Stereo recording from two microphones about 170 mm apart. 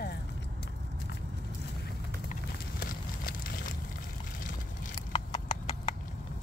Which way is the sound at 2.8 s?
60° left (ahead or behind).